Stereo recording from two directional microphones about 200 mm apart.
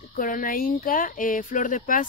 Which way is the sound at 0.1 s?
45° left (ahead or behind).